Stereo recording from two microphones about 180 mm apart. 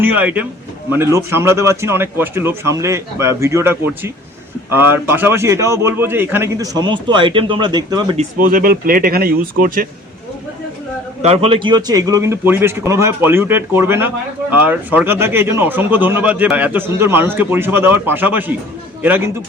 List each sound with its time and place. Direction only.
0.0 s speech: 10° right (ahead or behind)
8.4 s speech: 50° right (ahead or behind)
11.2 s speech: 35° right (ahead or behind); by 19.3 s 10° right (ahead or behind)